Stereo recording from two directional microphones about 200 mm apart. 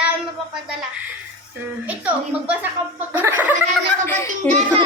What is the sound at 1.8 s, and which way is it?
Speech, 5° right (ahead or behind).